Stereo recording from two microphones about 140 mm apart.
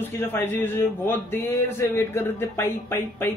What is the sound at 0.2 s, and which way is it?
A man's voice, 15° left (ahead or behind).